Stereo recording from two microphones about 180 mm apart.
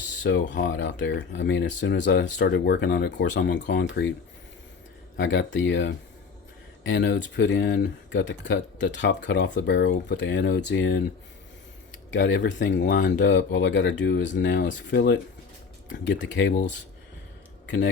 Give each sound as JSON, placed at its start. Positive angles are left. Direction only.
{"t": 0.2, "sound": "speech", "side_deg": 90}
{"t": 5.1, "sound": "speech", "side_deg": 90}
{"t": 6.8, "sound": "speech", "side_deg": 75}
{"t": 10.7, "sound": "speech", "side_deg": 80}
{"t": 12.1, "sound": "speech", "side_deg": 75}